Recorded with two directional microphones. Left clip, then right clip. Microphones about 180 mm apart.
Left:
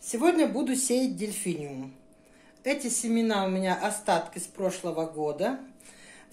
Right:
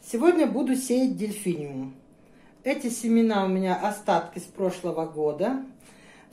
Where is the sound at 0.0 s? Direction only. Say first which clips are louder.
Right 3 dB; 25° left (ahead or behind).